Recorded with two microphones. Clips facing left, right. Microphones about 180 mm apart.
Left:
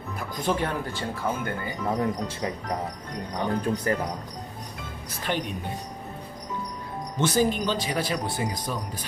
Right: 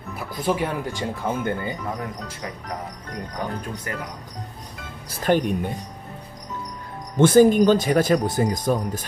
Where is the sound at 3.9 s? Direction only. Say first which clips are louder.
Left 5 dB; 35° left (ahead or behind).